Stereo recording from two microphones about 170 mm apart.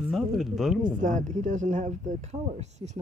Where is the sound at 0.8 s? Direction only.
50° right (ahead or behind).